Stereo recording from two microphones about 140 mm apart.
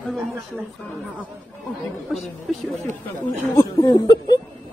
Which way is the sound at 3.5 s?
25° left (ahead or behind).